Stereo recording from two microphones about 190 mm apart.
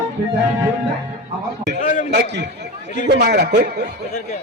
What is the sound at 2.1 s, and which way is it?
A man's voice, 65° right (ahead or behind).